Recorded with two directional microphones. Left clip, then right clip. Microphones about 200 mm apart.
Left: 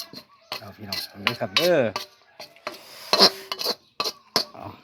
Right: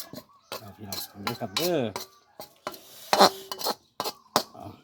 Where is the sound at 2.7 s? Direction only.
Centre (ahead or behind).